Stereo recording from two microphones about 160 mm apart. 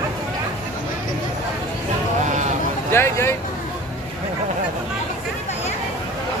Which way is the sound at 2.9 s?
15° left (ahead or behind).